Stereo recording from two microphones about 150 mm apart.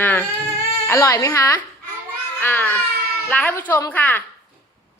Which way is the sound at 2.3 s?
15° left (ahead or behind).